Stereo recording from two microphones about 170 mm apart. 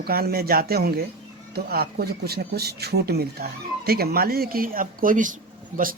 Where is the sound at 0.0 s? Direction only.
65° right (ahead or behind).